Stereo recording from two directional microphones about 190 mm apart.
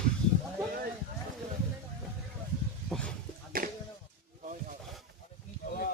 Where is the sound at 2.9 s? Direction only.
5° left (ahead or behind).